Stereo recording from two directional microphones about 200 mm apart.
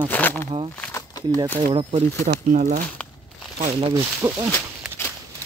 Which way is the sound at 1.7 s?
35° right (ahead or behind).